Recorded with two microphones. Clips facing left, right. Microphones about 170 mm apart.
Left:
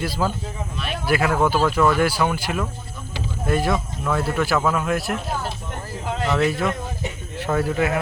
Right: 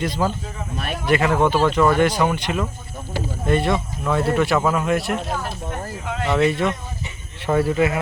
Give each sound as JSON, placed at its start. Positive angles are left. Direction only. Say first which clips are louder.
{"t": 0.0, "sound": "speech", "louder": "right 2 dB", "side_deg": 0}
{"t": 6.2, "sound": "speech", "louder": "right 2 dB", "side_deg": 0}